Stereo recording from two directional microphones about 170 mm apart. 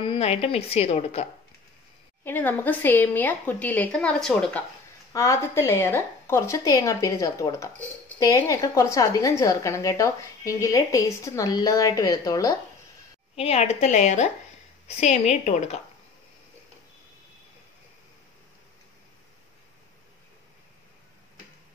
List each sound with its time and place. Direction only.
0.0 s a woman's voice: 35° left (ahead or behind)
2.2 s a woman's voice: 10° left (ahead or behind)
5.1 s a woman's voice: 20° left (ahead or behind)
13.4 s a woman's voice: 40° left (ahead or behind)